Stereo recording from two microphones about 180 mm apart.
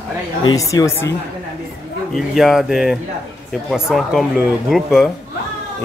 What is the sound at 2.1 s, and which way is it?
Speech, centre (ahead or behind).